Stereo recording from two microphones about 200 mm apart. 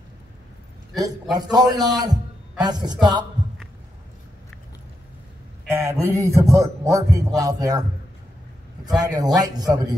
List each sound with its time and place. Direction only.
1.3 s a man's voice: 20° right (ahead or behind)
5.7 s a man's voice: 15° right (ahead or behind)
8.8 s a man's voice: 20° right (ahead or behind)